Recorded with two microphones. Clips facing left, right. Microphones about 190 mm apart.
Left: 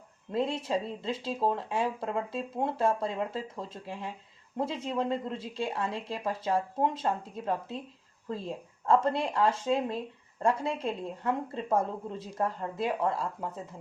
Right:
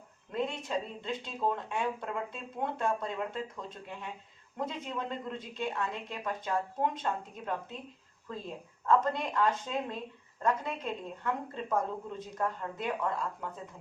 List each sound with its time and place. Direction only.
0.3 s speech: 30° left (ahead or behind)
8.9 s speech: 30° left (ahead or behind)